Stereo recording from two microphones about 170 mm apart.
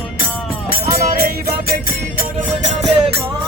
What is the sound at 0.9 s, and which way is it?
Music, 60° right (ahead or behind).